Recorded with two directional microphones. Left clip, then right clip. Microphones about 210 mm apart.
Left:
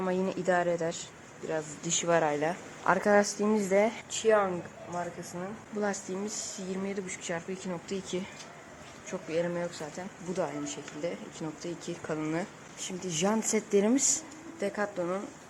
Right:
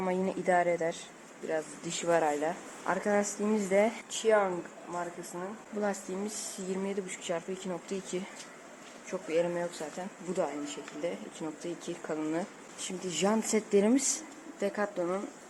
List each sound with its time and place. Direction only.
0.0 s speech: 5° left (ahead or behind)
5.8 s speech: centre (ahead or behind)